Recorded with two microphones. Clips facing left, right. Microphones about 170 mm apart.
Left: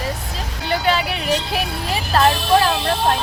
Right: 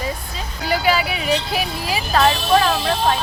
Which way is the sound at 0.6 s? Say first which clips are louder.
Right 1 dB; 5° right (ahead or behind).